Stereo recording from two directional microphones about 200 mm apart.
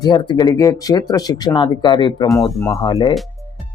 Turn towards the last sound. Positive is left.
turn(degrees=20)  # may be behind; listen again after turning